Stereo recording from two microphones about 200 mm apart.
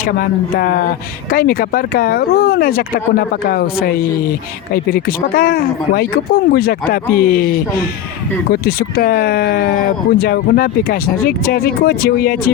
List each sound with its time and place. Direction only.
0.0 s speech: 45° left (ahead or behind)
8.6 s speech: 50° left (ahead or behind)